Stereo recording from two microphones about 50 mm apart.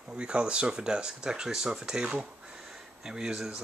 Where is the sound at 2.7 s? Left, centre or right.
Centre.